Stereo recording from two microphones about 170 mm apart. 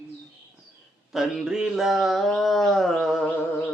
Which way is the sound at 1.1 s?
Centre (ahead or behind).